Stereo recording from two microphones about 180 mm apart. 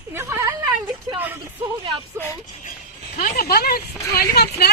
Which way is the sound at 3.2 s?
60° left (ahead or behind).